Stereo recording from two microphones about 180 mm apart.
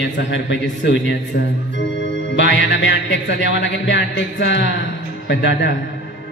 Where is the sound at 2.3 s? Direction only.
85° left.